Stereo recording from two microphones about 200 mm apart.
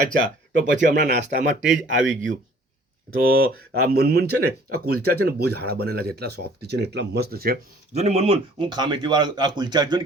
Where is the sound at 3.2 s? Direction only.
45° right (ahead or behind).